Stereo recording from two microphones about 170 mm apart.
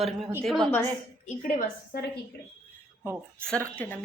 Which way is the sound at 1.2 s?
50° left (ahead or behind).